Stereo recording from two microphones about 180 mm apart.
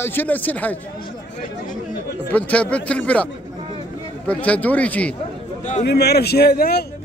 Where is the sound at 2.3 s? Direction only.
5° left (ahead or behind).